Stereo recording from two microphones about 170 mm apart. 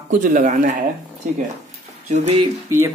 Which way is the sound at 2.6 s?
15° right (ahead or behind).